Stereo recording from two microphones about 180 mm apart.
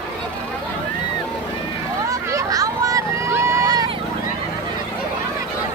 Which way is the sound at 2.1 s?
15° right (ahead or behind).